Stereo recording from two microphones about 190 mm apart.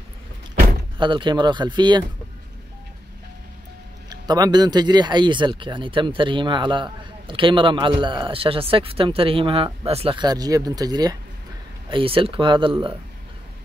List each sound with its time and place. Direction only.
0.9 s speech: 25° right (ahead or behind)
4.1 s speech: 20° right (ahead or behind)